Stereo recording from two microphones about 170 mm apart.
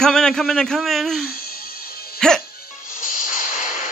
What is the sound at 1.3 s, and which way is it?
Music, 60° left (ahead or behind).